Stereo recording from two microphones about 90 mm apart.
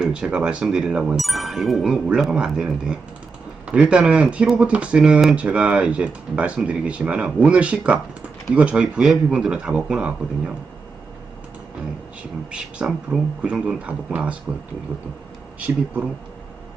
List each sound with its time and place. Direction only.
0.0 s speech: 10° right (ahead or behind)
12.5 s speech: 10° right (ahead or behind)
15.5 s speech: 15° right (ahead or behind)